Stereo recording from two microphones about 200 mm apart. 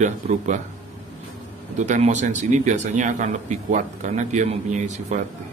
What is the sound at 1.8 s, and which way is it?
Speech, 35° right (ahead or behind).